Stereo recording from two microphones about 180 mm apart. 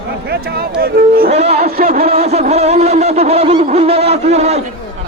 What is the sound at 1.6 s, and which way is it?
Speech, 55° right (ahead or behind).